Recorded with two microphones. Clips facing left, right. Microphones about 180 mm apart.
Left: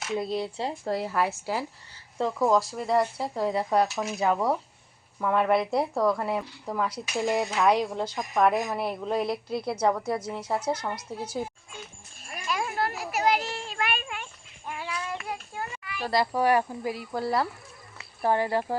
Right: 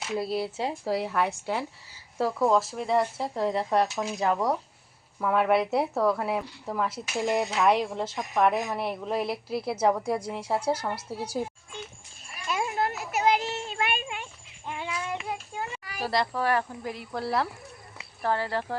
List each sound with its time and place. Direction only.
0.1 s a woman's voice: 5° right (ahead or behind)
12.5 s a sound: 20° right (ahead or behind)
14.7 s child singing: 25° right (ahead or behind)
15.8 s a sound: 40° right (ahead or behind)
16.2 s a woman's voice: 15° left (ahead or behind)
18.2 s speech: 15° left (ahead or behind)